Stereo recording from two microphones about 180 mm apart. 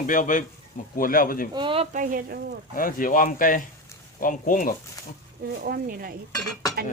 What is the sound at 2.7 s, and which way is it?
Speech, 50° left (ahead or behind).